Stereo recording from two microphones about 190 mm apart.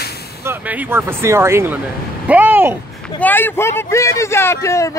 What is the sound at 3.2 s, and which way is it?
Speech, 10° left (ahead or behind).